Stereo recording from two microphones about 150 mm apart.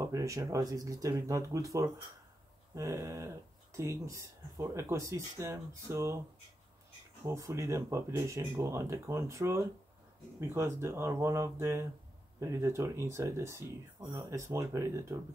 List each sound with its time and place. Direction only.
0.0 s speech: 20° right (ahead or behind)
7.2 s speech: 20° right (ahead or behind)